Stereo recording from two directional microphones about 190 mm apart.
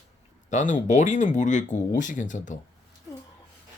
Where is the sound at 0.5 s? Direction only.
40° left (ahead or behind).